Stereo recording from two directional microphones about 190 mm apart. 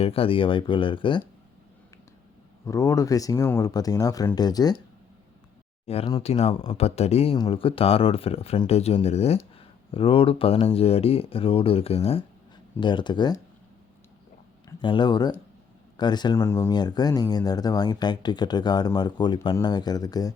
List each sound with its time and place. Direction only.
0.0 s speech: 30° left (ahead or behind)
2.6 s speech: 15° left (ahead or behind)
5.8 s speech: 30° left (ahead or behind)
14.8 s speech: 25° left (ahead or behind)